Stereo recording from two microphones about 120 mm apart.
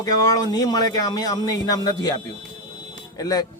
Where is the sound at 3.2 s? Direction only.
30° left (ahead or behind).